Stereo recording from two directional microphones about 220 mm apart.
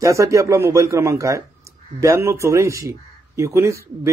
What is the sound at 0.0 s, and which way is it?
Speech, 15° right (ahead or behind).